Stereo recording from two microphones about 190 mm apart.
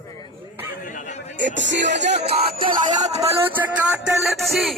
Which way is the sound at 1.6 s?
70° right (ahead or behind).